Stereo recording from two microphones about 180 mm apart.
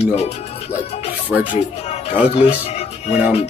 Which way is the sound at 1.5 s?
35° left (ahead or behind).